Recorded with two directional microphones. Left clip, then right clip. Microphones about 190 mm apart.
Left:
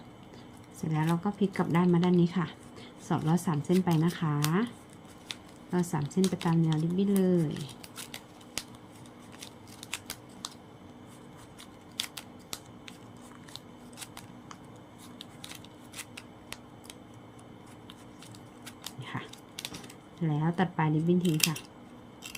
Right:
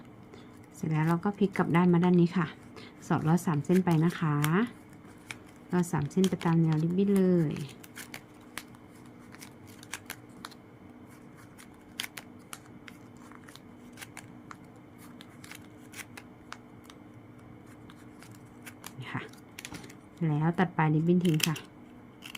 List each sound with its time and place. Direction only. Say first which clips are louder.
0.8 s speech: right 1 dB; 15° right (ahead or behind)
5.7 s speech: right 1 dB; 15° right (ahead or behind)
9.9 s scissors: left 2 dB; 10° right (ahead or behind)
11.9 s scissors: left 2 dB; 15° right (ahead or behind)
18.6 s dog: left 1 dB; 15° right (ahead or behind)
20.2 s speech: right 1 dB; 15° right (ahead or behind)